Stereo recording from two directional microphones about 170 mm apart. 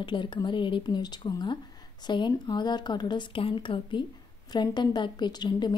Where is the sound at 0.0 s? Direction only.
30° left (ahead or behind).